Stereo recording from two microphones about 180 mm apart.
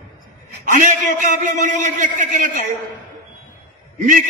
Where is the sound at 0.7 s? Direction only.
45° right (ahead or behind).